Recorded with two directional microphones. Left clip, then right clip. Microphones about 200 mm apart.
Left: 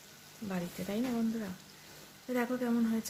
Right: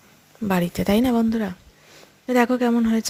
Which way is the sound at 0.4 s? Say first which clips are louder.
Right 17 dB; 55° right (ahead or behind).